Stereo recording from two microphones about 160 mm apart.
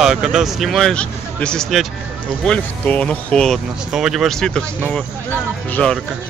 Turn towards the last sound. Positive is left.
turn(degrees=5)  # may be behind; listen again after turning